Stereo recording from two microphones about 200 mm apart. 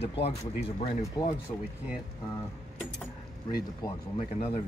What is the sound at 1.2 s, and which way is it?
Speech, 20° left (ahead or behind).